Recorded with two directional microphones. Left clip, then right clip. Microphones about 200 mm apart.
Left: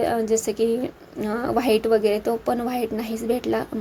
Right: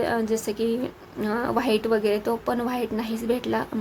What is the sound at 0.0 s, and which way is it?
A woman's voice, 10° left (ahead or behind).